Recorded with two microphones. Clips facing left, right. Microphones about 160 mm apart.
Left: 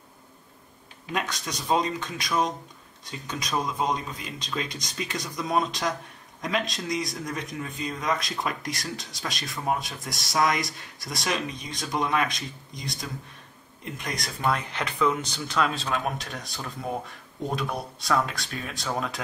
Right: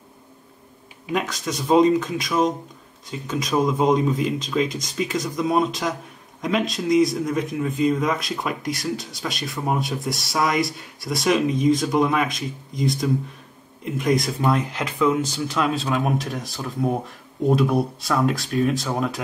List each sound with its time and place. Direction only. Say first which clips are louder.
1.0 s speech: right 6 dB; centre (ahead or behind)